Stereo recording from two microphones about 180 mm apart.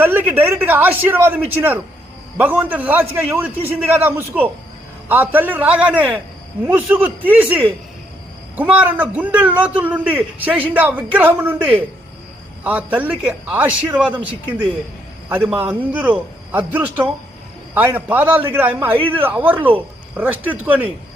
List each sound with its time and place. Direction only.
0.0 s a man's voice: 10° right (ahead or behind)
18.9 s speech: 30° right (ahead or behind)
19.2 s a man's voice: 10° right (ahead or behind)
19.5 s speech: 30° right (ahead or behind)
20.1 s a man's voice: 10° right (ahead or behind)